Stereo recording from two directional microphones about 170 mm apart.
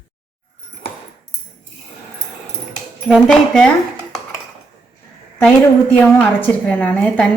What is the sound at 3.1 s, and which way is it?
Speech, 5° left (ahead or behind).